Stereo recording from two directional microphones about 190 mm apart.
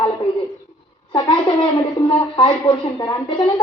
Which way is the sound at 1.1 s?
25° left (ahead or behind).